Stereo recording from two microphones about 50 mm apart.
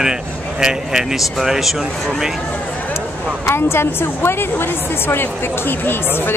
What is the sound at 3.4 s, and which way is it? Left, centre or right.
A woman's voice, left.